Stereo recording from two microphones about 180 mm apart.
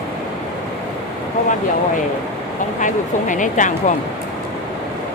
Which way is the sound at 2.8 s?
45° left (ahead or behind).